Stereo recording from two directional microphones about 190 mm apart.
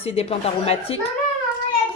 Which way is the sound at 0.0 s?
30° left (ahead or behind).